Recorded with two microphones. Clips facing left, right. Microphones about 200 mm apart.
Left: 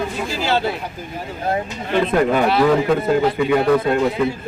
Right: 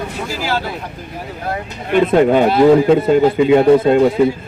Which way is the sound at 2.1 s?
25° right (ahead or behind).